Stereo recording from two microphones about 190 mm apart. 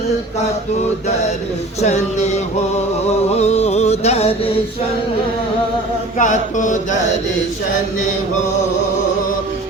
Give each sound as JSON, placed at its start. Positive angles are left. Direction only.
{"t": 1.8, "sound": "mantra", "side_deg": 35}
{"t": 3.1, "sound": "music", "side_deg": 35}
{"t": 6.1, "sound": "mantra", "side_deg": 40}